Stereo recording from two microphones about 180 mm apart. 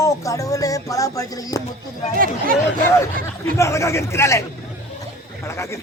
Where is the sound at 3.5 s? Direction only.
15° left (ahead or behind).